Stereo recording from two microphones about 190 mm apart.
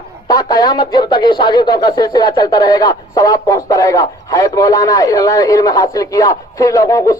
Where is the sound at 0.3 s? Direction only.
20° left (ahead or behind).